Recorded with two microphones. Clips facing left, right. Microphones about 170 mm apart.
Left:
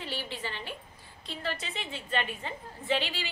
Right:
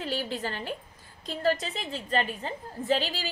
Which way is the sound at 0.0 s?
45° right (ahead or behind).